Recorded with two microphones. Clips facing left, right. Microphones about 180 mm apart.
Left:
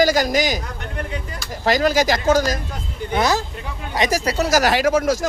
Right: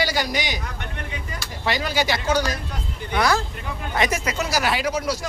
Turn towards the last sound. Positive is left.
turn(degrees=50)  # may be behind; listen again after turning